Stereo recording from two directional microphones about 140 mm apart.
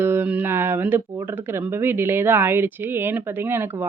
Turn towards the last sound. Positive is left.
turn(degrees=-15)  # may be behind; listen again after turning